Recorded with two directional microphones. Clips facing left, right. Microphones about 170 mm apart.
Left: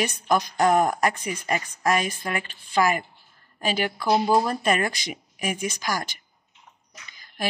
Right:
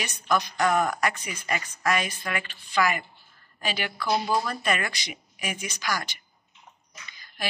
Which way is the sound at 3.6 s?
45° left (ahead or behind).